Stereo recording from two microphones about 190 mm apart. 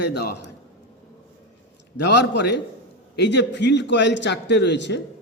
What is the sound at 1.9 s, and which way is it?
A man's voice, 65° left (ahead or behind).